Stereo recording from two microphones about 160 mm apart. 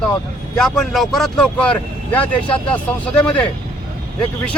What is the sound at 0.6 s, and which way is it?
Speech, centre (ahead or behind).